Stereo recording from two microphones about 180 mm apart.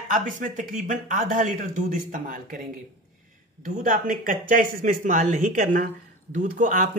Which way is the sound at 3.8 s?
50° right (ahead or behind).